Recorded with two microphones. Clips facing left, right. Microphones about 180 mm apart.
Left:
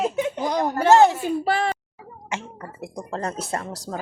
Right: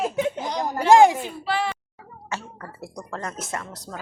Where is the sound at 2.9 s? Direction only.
35° left (ahead or behind).